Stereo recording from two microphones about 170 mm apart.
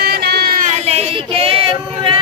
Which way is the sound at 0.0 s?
70° right (ahead or behind).